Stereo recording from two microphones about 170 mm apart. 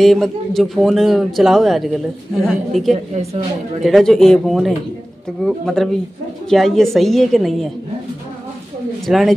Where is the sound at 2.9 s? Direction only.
40° right (ahead or behind).